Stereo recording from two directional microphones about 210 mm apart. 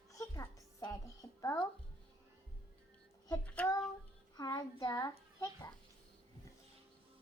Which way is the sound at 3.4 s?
5° left (ahead or behind).